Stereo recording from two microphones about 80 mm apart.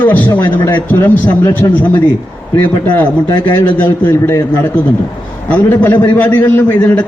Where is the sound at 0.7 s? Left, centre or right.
Left.